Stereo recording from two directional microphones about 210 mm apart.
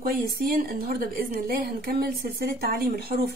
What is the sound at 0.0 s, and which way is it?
A woman's voice, 45° right (ahead or behind).